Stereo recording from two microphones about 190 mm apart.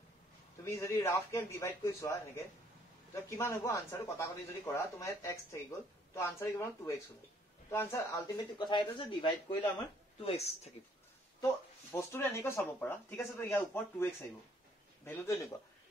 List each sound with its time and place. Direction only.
0.7 s speech: 15° left (ahead or behind); by 10.7 s 35° left (ahead or behind)
11.9 s speech: 15° left (ahead or behind)